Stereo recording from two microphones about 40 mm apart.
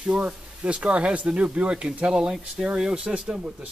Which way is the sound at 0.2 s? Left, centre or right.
Right.